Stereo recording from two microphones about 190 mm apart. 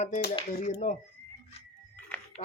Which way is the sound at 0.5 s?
40° left (ahead or behind).